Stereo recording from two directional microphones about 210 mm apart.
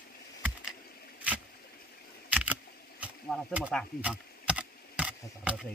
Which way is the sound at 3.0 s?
5° right (ahead or behind).